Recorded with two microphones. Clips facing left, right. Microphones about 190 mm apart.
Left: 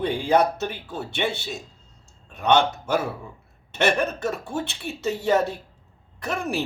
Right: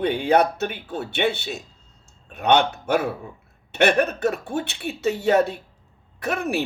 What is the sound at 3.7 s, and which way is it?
Speech, 60° right (ahead or behind).